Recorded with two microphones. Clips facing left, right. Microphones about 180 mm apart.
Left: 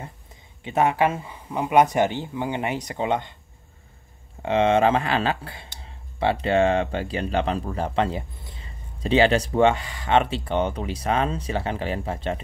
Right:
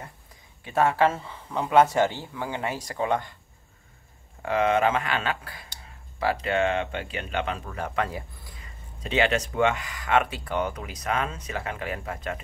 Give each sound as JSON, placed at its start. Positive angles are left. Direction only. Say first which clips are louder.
{"t": 0.7, "sound": "speech", "louder": "left 1 dB", "side_deg": 20}
{"t": 4.4, "sound": "speech", "louder": "left 4 dB", "side_deg": 25}